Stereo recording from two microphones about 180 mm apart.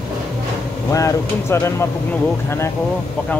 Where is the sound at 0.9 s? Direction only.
15° left (ahead or behind).